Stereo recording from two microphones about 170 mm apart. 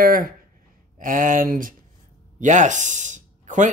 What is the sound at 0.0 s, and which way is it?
Speech, 55° right (ahead or behind).